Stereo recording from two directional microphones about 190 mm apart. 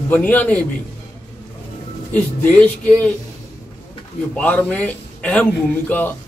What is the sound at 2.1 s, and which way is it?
Speech, 5° left (ahead or behind).